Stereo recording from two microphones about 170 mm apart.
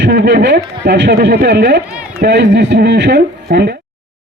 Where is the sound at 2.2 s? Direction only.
90° right; by 3.8 s 70° right (ahead or behind).